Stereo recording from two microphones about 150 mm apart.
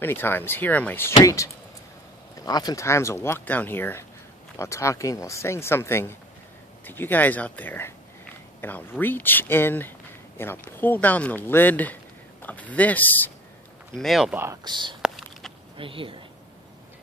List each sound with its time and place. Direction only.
0.0 s speech: 15° left (ahead or behind)
13.9 s speech: centre (ahead or behind)
14.3 s speech: 15° right (ahead or behind)
14.6 s speech: 30° right (ahead or behind)
15.0 s a sound: centre (ahead or behind)
15.8 s speech: 35° right (ahead or behind)